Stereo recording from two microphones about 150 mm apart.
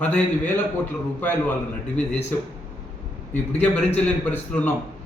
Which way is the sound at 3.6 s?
10° left (ahead or behind).